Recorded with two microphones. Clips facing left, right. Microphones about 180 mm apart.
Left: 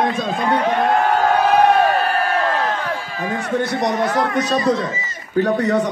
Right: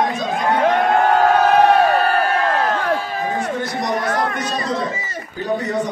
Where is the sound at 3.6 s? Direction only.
65° left (ahead or behind).